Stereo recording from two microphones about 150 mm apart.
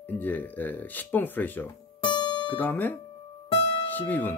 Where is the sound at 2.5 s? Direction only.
10° left (ahead or behind).